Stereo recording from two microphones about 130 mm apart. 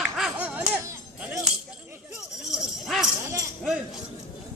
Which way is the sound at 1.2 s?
5° right (ahead or behind).